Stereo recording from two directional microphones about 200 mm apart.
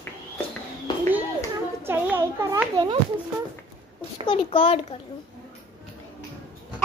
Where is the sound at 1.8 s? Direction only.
10° right (ahead or behind).